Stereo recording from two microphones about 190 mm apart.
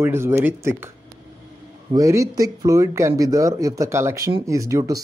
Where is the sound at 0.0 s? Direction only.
10° right (ahead or behind).